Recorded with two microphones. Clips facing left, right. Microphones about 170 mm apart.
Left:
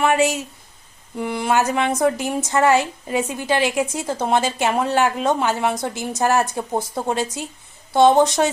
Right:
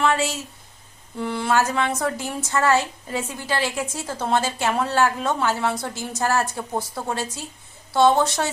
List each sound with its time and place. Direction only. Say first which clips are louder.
0.0 s a woman's voice: left 4 dB; 15° left (ahead or behind)